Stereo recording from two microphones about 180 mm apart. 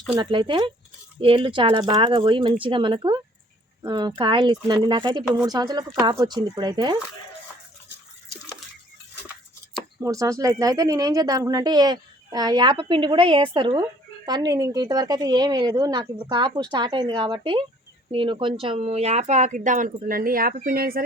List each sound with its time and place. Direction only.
0.1 s speech: 25° right (ahead or behind)
10.0 s speech: 15° right (ahead or behind); by 21.0 s 55° right (ahead or behind)